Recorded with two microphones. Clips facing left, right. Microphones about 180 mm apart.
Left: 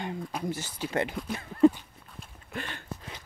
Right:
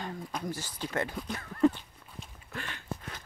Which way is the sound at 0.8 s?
30° left (ahead or behind).